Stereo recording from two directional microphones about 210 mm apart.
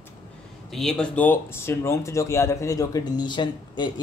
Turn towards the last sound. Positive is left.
turn(degrees=20)  # may be behind; listen again after turning